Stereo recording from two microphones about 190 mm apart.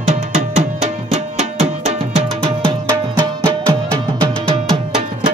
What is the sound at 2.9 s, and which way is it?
Music, 15° right (ahead or behind).